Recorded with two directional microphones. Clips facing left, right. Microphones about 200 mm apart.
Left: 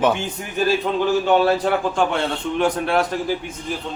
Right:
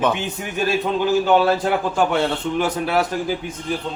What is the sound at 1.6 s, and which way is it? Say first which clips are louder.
A man's voice: even; 5° right (ahead or behind).